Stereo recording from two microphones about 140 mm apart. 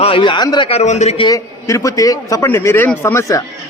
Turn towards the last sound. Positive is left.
turn(degrees=20)  # may be behind; listen again after turning